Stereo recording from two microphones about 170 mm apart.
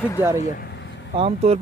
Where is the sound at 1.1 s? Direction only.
35° right (ahead or behind).